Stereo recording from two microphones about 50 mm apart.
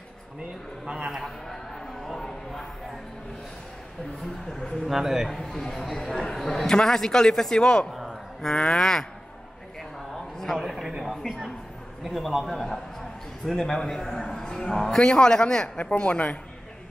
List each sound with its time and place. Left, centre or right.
0.8 s a man's voice: centre
1.1 s a sound: centre
4.6 s speech: centre
4.8 s a man's voice: centre
5.3 s speech: centre
7.9 s a sound: centre
8.4 s speech: centre
10.1 s a sound: centre
10.6 s a man's voice: centre
16.0 s a man's voice: left